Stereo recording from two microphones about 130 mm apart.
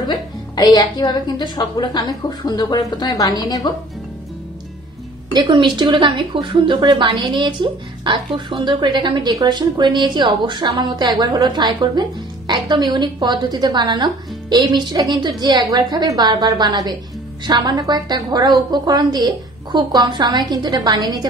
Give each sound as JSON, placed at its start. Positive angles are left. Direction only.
{"t": 0.1, "sound": "a woman's voice", "side_deg": 30}
{"t": 5.3, "sound": "speech", "side_deg": -35}